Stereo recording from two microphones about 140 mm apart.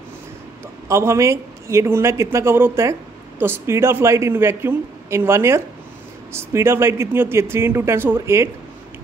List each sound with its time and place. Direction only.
0.8 s speech: 20° right (ahead or behind)